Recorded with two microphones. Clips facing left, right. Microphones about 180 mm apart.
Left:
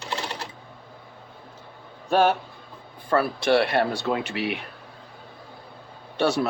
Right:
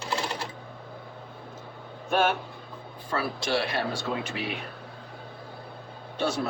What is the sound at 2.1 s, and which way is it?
Speech, 40° left (ahead or behind).